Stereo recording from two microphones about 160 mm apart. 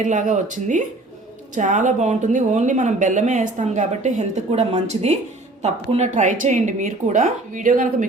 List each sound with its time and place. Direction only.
0.0 s speech: 50° right (ahead or behind)